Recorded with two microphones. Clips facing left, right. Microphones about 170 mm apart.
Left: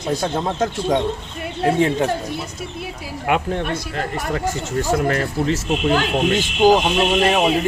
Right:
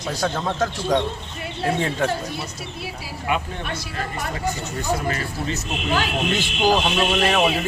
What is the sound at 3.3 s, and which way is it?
Speech, 70° left (ahead or behind).